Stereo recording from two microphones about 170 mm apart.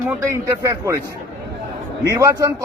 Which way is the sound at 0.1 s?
20° right (ahead or behind).